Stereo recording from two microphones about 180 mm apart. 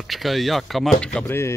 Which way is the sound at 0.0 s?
Centre (ahead or behind).